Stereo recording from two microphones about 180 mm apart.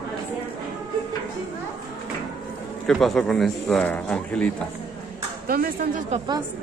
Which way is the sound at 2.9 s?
Centre (ahead or behind).